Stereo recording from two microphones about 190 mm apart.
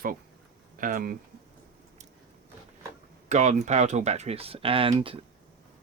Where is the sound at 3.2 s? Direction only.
40° right (ahead or behind).